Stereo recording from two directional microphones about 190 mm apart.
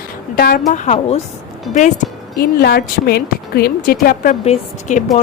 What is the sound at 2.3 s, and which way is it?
A woman's voice, 55° left (ahead or behind).